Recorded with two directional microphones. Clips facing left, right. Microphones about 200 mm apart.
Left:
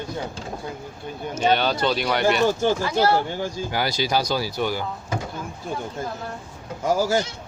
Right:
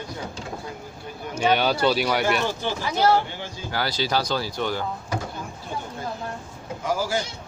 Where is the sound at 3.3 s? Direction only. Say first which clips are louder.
Left 8 dB; 45° left (ahead or behind).